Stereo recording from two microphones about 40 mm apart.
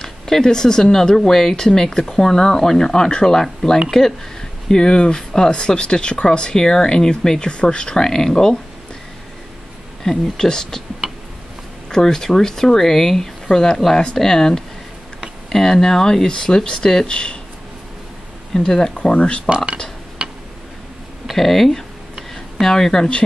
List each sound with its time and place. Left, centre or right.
0.0 s speech: centre
10.0 s speech: centre
11.9 s speech: centre
18.5 s speech: centre
18.9 s speech: left
19.5 s speech: right
21.3 s a sound: centre